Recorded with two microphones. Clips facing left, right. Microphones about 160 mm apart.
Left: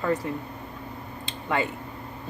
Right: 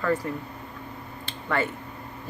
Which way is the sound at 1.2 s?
15° left (ahead or behind).